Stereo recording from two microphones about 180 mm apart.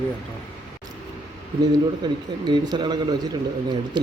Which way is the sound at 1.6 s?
25° right (ahead or behind).